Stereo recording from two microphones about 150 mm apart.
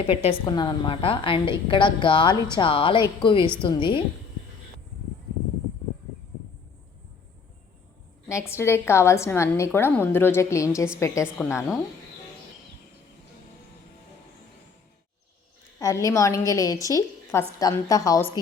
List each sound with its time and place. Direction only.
0.1 s a woman's voice: 40° left (ahead or behind)
0.4 s a woman's voice: 30° left (ahead or behind)
8.3 s a woman's voice: 20° left (ahead or behind)
15.8 s a woman's voice: 20° left (ahead or behind)